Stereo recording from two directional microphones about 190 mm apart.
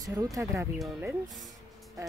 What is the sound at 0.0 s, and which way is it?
Speech, 20° right (ahead or behind).